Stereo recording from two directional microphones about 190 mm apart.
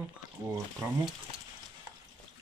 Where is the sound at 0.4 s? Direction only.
15° right (ahead or behind).